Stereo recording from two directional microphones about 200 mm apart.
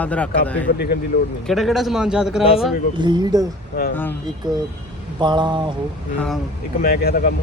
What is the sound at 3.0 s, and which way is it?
Speech, 20° right (ahead or behind).